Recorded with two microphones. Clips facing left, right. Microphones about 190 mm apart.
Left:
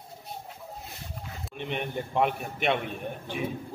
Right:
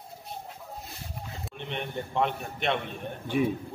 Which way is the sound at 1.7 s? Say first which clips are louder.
Left 2 dB; 5° left (ahead or behind).